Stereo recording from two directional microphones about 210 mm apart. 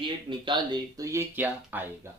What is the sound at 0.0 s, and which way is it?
Speech, 25° right (ahead or behind).